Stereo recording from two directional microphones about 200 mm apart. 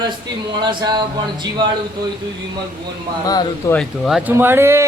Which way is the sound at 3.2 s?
20° left (ahead or behind).